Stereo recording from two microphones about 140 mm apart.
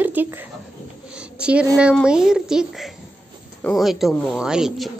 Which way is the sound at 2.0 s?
5° right (ahead or behind).